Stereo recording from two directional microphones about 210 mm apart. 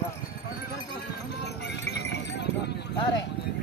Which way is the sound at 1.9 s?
55° left (ahead or behind).